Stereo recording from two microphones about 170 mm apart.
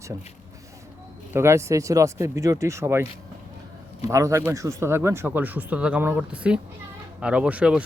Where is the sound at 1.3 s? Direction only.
15° right (ahead or behind).